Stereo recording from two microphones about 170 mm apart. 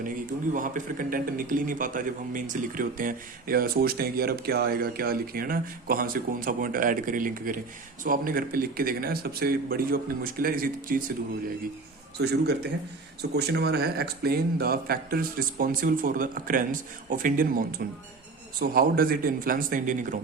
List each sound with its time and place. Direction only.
0.5 s a man's voice: 50° right (ahead or behind)
12.2 s a man's voice: 75° right (ahead or behind); by 20.1 s 50° right (ahead or behind)